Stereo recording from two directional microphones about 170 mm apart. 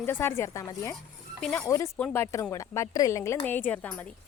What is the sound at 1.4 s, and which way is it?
Speech, 5° left (ahead or behind).